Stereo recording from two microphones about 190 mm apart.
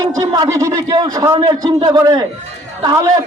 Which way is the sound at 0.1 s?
15° right (ahead or behind).